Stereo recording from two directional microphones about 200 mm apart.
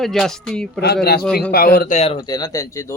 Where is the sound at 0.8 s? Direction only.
55° left (ahead or behind).